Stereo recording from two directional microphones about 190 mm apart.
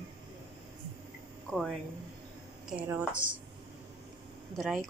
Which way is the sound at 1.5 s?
Centre (ahead or behind).